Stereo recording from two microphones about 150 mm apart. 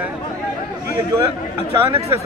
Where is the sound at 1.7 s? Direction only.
15° right (ahead or behind).